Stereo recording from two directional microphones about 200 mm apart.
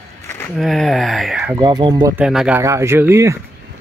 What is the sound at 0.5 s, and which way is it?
Speech, centre (ahead or behind).